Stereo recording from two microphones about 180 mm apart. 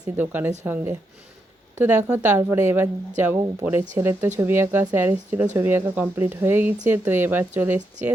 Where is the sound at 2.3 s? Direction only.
15° right (ahead or behind).